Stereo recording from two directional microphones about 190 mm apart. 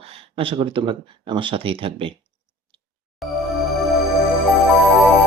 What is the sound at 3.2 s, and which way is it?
Music, centre (ahead or behind).